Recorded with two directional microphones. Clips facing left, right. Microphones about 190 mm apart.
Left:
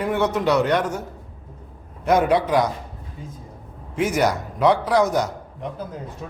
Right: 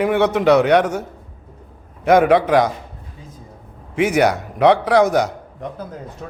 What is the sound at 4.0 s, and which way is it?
A man's voice, 65° right (ahead or behind).